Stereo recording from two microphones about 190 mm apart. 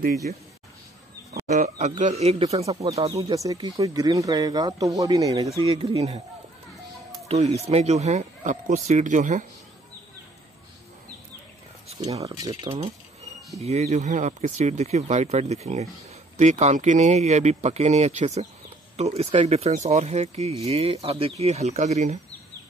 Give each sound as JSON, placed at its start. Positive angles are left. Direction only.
{"t": 1.3, "sound": "speech", "side_deg": -40}
{"t": 2.9, "sound": "speech", "side_deg": -20}
{"t": 7.2, "sound": "speech", "side_deg": -35}
{"t": 12.2, "sound": "speech", "side_deg": -20}